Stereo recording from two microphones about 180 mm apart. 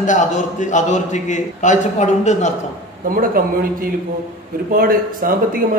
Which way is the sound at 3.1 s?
55° right (ahead or behind).